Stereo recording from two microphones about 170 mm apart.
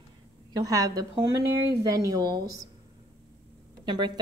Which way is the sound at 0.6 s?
20° right (ahead or behind).